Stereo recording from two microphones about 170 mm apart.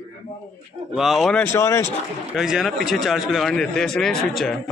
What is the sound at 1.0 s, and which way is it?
Speech, centre (ahead or behind).